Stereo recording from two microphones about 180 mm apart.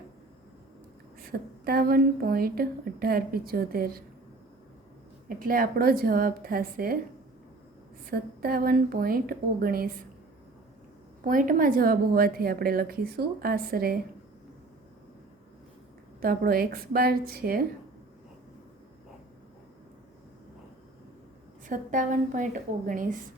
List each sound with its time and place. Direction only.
1.2 s a woman's voice: 60° right (ahead or behind)
5.4 s a woman's voice: 50° right (ahead or behind)
8.1 s a woman's voice: 55° right (ahead or behind)
11.2 s a woman's voice: 50° right (ahead or behind)
16.2 s a woman's voice: 55° right (ahead or behind)
21.7 s a woman's voice: 45° right (ahead or behind)